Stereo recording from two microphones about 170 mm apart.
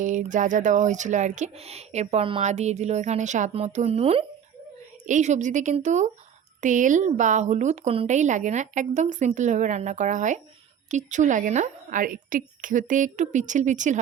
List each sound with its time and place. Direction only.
0.0 s a woman's voice: 45° right (ahead or behind)